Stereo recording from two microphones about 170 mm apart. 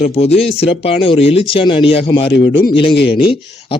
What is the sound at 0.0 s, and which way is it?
A man's voice, 35° left (ahead or behind).